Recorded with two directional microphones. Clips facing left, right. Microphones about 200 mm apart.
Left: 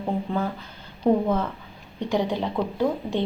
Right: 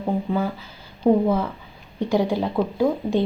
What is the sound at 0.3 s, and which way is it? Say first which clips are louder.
Speech: right 3 dB; 5° right (ahead or behind).